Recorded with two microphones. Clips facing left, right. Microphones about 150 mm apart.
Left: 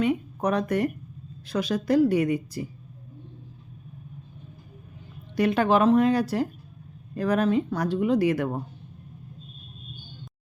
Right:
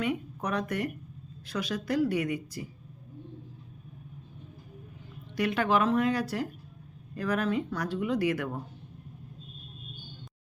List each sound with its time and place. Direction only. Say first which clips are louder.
0.0 s a woman's voice: left 7 dB; 25° left (ahead or behind)
5.4 s speech: left 6 dB; 30° left (ahead or behind)